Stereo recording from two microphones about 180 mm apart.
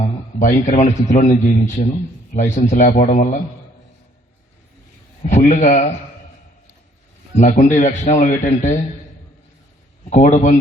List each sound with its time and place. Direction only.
0.0 s a man's voice: 40° left (ahead or behind)
5.2 s a man's voice: 40° left (ahead or behind)
7.3 s speech: 40° left (ahead or behind)
10.1 s speech: 40° left (ahead or behind)